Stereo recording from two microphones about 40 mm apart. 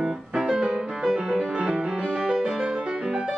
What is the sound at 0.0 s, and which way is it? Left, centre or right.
Piano, centre.